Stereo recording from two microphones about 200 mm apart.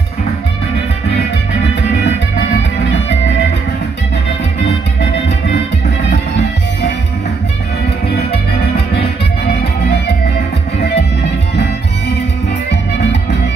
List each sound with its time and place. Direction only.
2.0 s music: 60° left (ahead or behind)
8.3 s music: 30° left (ahead or behind)